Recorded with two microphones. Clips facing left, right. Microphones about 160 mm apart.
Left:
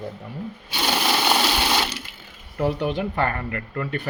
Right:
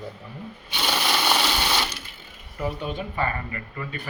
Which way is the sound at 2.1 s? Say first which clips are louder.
Left 1 dB; 90° left.